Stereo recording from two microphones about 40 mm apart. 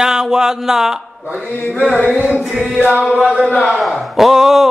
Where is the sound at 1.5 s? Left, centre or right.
Left.